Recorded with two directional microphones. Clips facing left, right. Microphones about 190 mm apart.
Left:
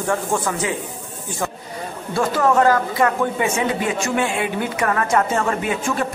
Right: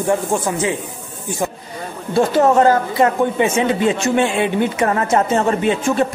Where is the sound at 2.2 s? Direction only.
25° right (ahead or behind).